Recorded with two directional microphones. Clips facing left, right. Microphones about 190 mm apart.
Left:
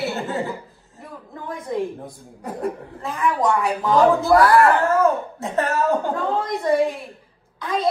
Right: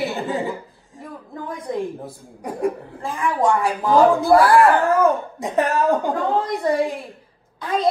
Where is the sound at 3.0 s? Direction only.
30° right (ahead or behind).